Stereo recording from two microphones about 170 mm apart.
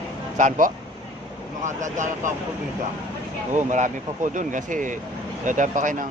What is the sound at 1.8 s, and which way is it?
Speech, 45° right (ahead or behind).